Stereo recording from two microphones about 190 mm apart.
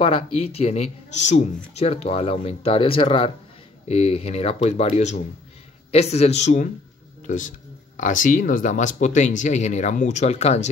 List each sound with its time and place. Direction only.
0.0 s speech: 30° left (ahead or behind)